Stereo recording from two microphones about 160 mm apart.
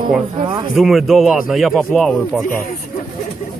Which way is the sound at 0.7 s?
Centre (ahead or behind).